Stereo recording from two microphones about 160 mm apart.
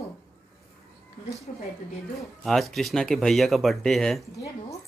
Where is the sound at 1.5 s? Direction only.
40° left (ahead or behind).